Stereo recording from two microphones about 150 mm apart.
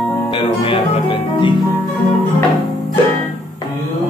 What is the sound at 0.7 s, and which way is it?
Music, 35° left (ahead or behind).